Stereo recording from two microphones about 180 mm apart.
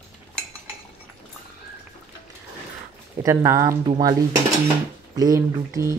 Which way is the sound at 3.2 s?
15° right (ahead or behind).